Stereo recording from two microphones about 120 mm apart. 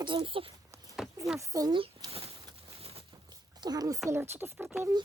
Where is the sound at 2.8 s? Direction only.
55° right (ahead or behind).